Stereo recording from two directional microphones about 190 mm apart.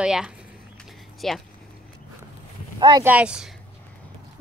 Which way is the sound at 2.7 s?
25° right (ahead or behind).